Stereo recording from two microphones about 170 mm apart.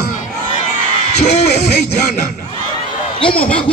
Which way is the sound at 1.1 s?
40° left (ahead or behind).